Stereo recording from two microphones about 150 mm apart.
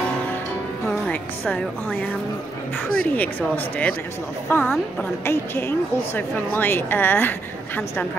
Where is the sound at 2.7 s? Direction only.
10° left (ahead or behind).